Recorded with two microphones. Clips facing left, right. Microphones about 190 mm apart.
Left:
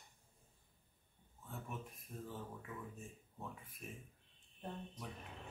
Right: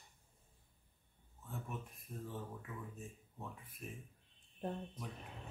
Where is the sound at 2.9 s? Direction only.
Centre (ahead or behind).